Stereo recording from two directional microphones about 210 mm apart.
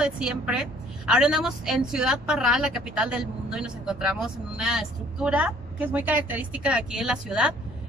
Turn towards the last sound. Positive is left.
turn(degrees=-5)  # may be behind; listen again after turning